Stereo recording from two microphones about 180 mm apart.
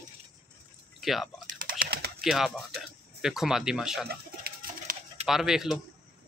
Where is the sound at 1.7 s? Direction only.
55° right (ahead or behind).